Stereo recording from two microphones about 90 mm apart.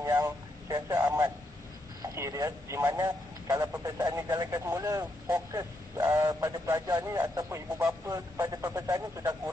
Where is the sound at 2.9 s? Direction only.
45° right (ahead or behind).